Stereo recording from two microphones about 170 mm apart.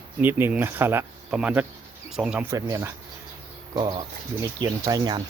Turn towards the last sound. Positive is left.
turn(degrees=-25)  # may be behind; listen again after turning